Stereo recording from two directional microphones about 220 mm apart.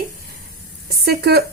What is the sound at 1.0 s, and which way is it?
Speech, 45° right (ahead or behind).